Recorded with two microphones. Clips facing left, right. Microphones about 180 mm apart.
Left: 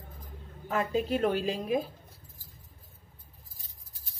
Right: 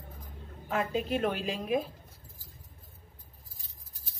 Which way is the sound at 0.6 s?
40° left (ahead or behind).